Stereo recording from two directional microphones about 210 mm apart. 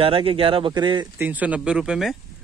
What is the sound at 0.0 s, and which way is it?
Speech, 25° right (ahead or behind).